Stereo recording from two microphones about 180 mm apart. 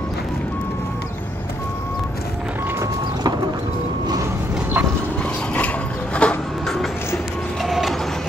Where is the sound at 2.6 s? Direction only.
15° right (ahead or behind).